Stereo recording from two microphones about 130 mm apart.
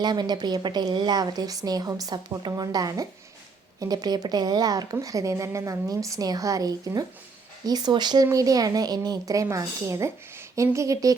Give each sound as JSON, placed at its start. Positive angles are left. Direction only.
{"t": 0.0, "sound": "a woman's voice", "side_deg": -35}